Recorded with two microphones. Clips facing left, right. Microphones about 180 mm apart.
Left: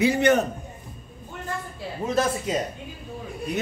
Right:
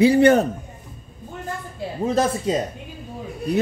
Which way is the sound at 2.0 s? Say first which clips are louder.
Right 4 dB; 30° right (ahead or behind).